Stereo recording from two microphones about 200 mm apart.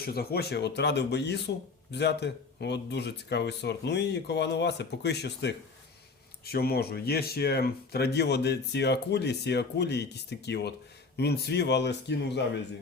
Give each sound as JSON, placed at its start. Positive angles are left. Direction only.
{"t": 0.0, "sound": "speech", "side_deg": 50}